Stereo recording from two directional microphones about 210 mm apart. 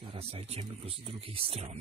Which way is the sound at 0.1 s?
30° right (ahead or behind).